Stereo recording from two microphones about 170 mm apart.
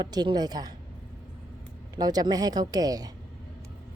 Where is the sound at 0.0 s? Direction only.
25° right (ahead or behind).